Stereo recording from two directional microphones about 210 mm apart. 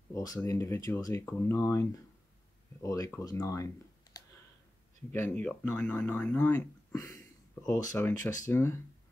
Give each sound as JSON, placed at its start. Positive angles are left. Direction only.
{"t": 0.1, "sound": "speech", "side_deg": 15}